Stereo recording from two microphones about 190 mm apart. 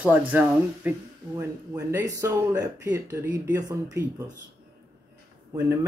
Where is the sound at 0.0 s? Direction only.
10° right (ahead or behind).